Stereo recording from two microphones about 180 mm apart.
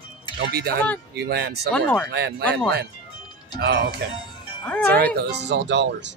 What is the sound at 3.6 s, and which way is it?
Speech, 60° right (ahead or behind).